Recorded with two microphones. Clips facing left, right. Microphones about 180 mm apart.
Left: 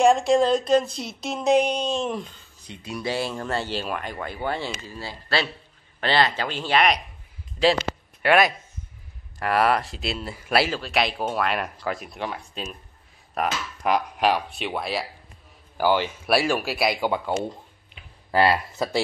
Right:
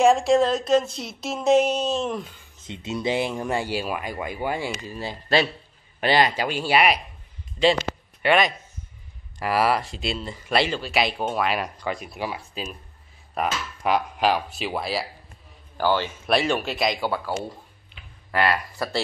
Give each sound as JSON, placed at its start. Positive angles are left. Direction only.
{"t": 0.0, "sound": "speech", "side_deg": 0}
{"t": 2.6, "sound": "speech", "side_deg": -20}
{"t": 8.2, "sound": "a man's voice", "side_deg": 5}
{"t": 15.8, "sound": "speech", "side_deg": 15}
{"t": 18.3, "sound": "speech", "side_deg": 30}